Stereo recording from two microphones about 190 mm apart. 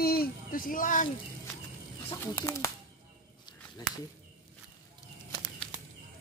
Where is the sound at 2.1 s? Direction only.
15° left (ahead or behind).